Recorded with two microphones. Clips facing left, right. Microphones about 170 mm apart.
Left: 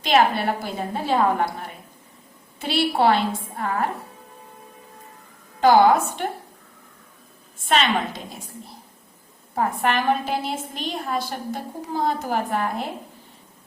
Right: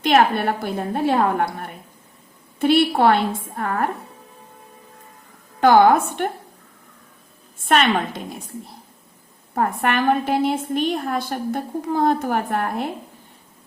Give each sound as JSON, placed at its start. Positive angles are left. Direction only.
{"t": 0.0, "sound": "a woman's voice", "side_deg": -55}
{"t": 5.5, "sound": "a woman's voice", "side_deg": -60}
{"t": 7.6, "sound": "a woman's voice", "side_deg": -55}
{"t": 9.6, "sound": "a woman's voice", "side_deg": -55}